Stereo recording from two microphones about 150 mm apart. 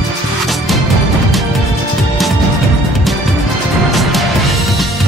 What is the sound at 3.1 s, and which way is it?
Music, centre (ahead or behind).